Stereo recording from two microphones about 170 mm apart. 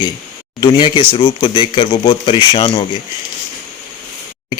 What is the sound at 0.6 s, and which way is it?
Speech, 30° left (ahead or behind).